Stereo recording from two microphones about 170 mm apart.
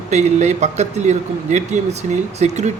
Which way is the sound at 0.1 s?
45° right (ahead or behind).